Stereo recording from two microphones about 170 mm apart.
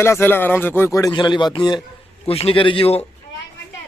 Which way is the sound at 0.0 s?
15° left (ahead or behind).